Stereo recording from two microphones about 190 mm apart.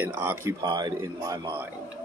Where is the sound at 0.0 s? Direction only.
10° right (ahead or behind).